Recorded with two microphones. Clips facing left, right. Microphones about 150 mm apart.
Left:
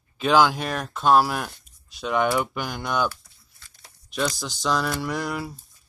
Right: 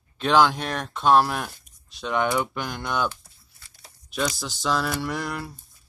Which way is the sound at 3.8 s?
Centre (ahead or behind).